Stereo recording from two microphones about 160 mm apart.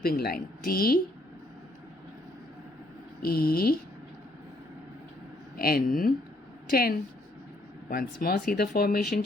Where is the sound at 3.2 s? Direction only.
70° left (ahead or behind).